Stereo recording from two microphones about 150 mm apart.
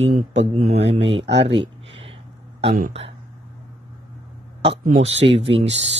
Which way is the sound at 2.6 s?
45° right (ahead or behind).